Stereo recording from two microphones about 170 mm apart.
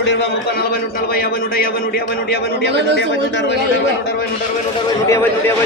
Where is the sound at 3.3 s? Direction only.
90° left.